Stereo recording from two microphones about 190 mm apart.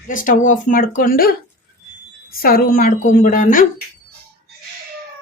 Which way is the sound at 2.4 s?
50° left (ahead or behind).